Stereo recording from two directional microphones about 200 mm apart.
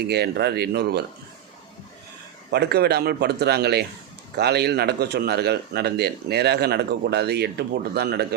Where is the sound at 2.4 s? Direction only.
55° right (ahead or behind).